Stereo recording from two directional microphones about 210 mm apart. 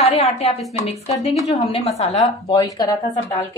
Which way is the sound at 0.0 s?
30° left (ahead or behind).